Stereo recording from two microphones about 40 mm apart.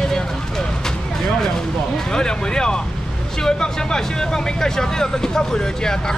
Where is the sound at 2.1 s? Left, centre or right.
Centre.